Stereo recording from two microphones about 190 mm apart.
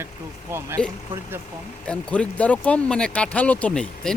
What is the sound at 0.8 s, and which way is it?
Speech, 5° left (ahead or behind).